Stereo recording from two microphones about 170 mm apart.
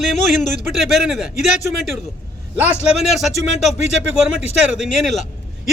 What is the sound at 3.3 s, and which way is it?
Speech, 40° left (ahead or behind).